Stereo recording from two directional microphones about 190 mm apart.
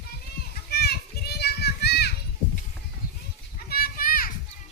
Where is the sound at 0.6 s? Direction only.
55° left (ahead or behind).